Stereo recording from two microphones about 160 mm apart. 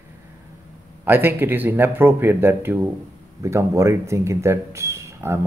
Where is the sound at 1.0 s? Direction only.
10° right (ahead or behind).